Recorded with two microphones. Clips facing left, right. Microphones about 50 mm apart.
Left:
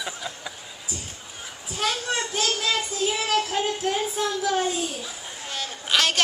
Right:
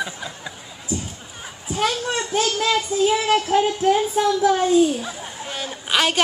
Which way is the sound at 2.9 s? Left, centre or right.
Centre.